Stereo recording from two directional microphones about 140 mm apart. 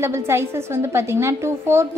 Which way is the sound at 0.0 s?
20° right (ahead or behind).